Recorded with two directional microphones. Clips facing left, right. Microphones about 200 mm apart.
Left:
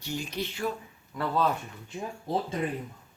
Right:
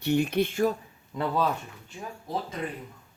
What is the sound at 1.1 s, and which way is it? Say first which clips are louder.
Speech: right 2 dB; 25° right (ahead or behind).